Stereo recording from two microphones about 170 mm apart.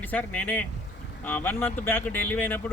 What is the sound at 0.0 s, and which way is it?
Speech, 10° left (ahead or behind).